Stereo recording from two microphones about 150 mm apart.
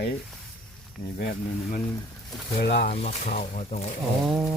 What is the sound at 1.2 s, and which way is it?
Speech, 70° left (ahead or behind).